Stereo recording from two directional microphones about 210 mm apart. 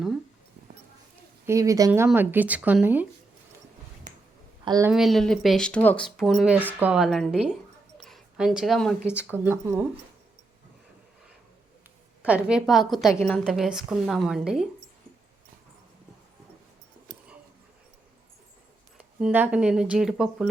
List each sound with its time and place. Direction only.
1.5 s speech: 15° right (ahead or behind)
4.6 s a woman's voice: 20° right (ahead or behind)
4.9 s speech: centre (ahead or behind)
12.2 s speech: 5° right (ahead or behind)
19.2 s speech: 5° right (ahead or behind)